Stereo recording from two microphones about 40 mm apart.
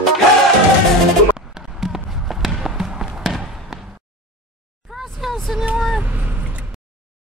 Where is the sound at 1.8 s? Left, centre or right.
Centre.